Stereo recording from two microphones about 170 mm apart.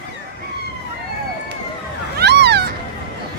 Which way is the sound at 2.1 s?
80° right.